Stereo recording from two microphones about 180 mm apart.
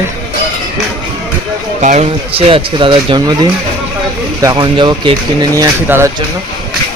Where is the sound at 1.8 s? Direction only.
40° right (ahead or behind); by 6.2 s 15° right (ahead or behind).